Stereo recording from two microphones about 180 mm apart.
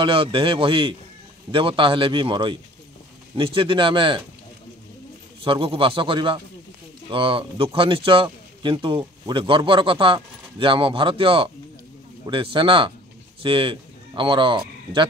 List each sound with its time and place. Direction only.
0.0 s a man's voice: 30° right (ahead or behind)
5.4 s a man's voice: 30° right (ahead or behind)